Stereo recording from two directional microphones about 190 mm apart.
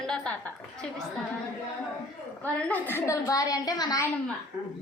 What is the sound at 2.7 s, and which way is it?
A woman's voice, 10° left (ahead or behind).